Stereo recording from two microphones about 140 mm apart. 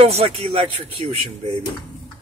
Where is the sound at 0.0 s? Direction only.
45° right (ahead or behind).